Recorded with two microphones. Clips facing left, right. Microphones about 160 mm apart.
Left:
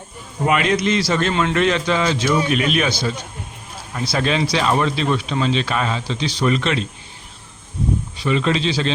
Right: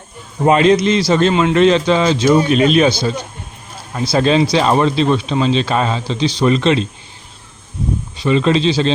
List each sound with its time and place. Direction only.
0.4 s speech: 30° right (ahead or behind)
1.5 s speech: 25° right (ahead or behind)
4.1 s speech: 30° right (ahead or behind)
8.2 s speech: 30° right (ahead or behind)